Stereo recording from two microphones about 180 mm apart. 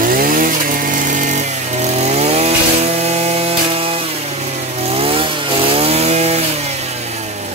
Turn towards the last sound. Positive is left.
turn(degrees=-35)  # may be behind; listen again after turning